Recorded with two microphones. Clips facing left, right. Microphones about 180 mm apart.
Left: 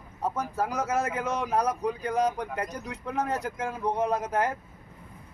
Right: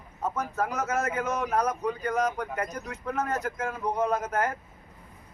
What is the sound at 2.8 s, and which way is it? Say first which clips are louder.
Speech: even; 15° left (ahead or behind).